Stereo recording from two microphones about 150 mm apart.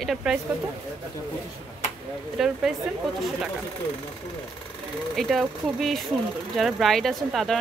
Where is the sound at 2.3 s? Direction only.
5° right (ahead or behind).